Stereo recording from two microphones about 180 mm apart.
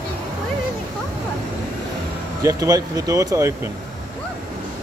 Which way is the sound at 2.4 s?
20° right (ahead or behind).